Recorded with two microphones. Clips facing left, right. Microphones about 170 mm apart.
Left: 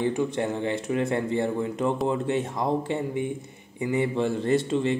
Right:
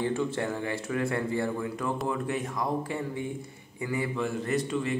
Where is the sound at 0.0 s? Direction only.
15° left (ahead or behind).